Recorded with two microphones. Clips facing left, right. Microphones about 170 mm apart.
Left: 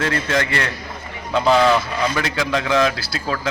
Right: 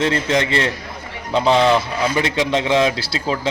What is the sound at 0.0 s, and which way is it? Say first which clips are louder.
Speech: right 3 dB; 20° right (ahead or behind).